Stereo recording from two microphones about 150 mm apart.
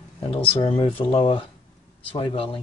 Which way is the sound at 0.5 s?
40° left (ahead or behind).